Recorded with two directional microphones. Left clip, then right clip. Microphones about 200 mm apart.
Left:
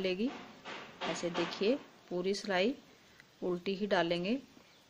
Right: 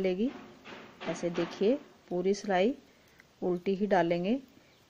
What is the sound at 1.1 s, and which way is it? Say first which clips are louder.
A woman's voice: right 4 dB; 25° right (ahead or behind).